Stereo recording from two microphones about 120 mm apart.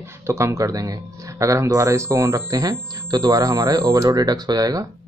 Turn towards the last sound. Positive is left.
turn(degrees=-30)  # may be behind; listen again after turning